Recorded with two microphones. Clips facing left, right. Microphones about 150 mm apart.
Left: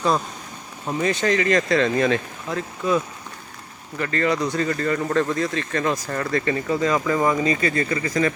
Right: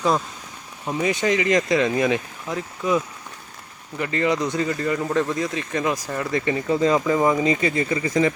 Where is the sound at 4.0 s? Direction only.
15° right (ahead or behind).